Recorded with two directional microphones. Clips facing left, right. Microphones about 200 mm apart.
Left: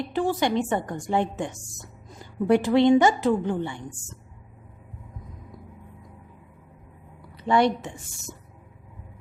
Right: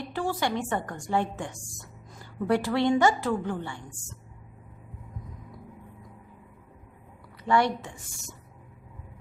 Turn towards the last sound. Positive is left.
turn(degrees=20)  # may be behind; listen again after turning